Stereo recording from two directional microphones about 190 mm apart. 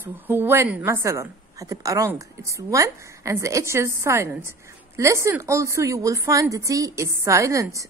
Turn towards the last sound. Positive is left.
turn(degrees=-15)  # may be behind; listen again after turning